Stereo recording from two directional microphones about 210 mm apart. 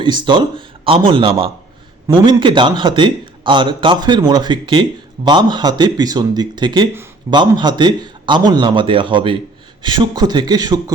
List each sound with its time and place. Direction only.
0.0 s a man's voice: 20° right (ahead or behind)